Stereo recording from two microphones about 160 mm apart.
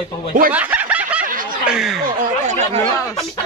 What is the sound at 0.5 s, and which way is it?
Snicker, 10° right (ahead or behind).